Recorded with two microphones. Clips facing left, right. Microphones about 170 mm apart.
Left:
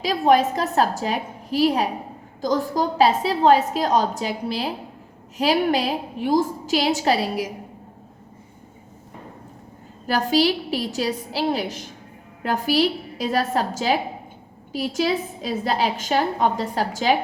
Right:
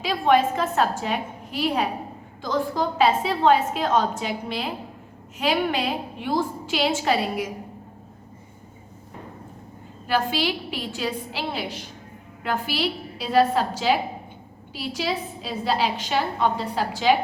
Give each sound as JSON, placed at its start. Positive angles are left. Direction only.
{"t": 0.0, "sound": "a woman's voice", "side_deg": 40}
{"t": 10.1, "sound": "a woman's voice", "side_deg": 40}